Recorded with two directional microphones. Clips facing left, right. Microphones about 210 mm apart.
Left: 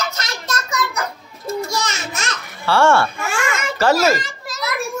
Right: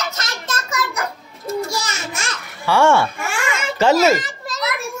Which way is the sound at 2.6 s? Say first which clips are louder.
Even; 15° right (ahead or behind).